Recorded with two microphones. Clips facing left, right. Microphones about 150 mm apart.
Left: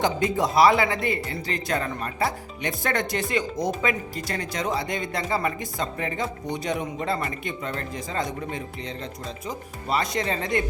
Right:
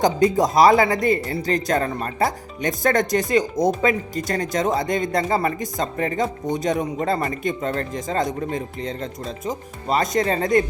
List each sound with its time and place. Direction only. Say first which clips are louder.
0.0 s speech: right 6 dB; 40° right (ahead or behind)